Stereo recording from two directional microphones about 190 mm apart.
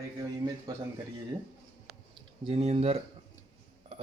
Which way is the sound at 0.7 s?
20° right (ahead or behind).